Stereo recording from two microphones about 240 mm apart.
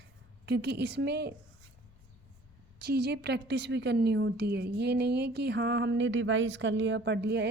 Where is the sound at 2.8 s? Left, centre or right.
Right.